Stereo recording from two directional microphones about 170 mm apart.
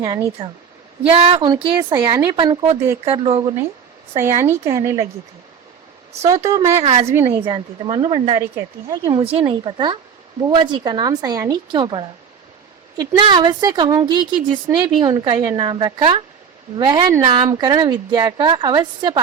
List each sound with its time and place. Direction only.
0.4 s speech: 35° right (ahead or behind)
4.2 s speech: 15° right (ahead or behind)
6.2 s speech: 20° right (ahead or behind)
6.7 s speech: 40° right (ahead or behind)
7.1 s speech: 15° right (ahead or behind)
7.4 s speech: 30° right (ahead or behind)